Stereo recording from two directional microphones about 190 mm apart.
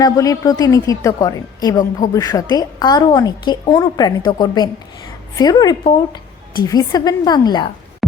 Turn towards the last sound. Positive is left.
turn(degrees=20)  # may be behind; listen again after turning